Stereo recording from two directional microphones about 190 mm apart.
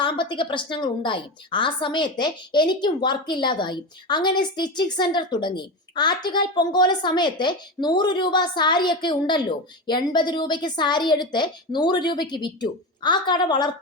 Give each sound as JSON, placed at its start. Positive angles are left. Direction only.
{"t": 0.0, "sound": "a woman's voice", "side_deg": 25}